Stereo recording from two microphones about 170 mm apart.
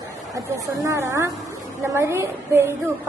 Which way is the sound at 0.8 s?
20° right (ahead or behind).